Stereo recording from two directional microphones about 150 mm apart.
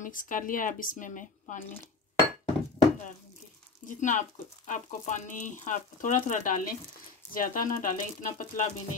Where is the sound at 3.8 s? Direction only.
60° left (ahead or behind).